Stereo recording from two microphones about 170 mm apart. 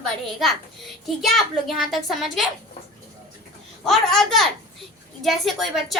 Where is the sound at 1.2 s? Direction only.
Centre (ahead or behind).